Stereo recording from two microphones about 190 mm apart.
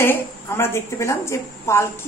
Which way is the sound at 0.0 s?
10° left (ahead or behind).